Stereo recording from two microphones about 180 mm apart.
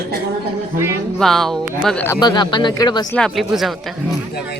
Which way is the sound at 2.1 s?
25° left (ahead or behind).